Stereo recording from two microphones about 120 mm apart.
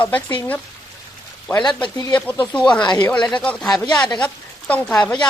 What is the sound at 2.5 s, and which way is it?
Speech, 10° left (ahead or behind).